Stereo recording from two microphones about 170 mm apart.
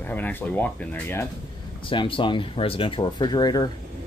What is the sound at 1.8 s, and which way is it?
Speech, 30° left (ahead or behind).